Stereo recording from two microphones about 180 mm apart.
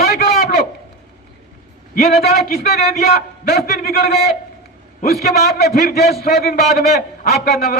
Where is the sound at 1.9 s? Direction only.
65° left (ahead or behind).